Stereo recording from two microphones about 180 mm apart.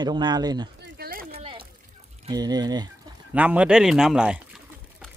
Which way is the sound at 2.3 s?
20° right (ahead or behind).